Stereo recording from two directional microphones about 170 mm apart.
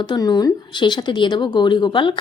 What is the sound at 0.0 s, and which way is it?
A woman's voice, 25° left (ahead or behind).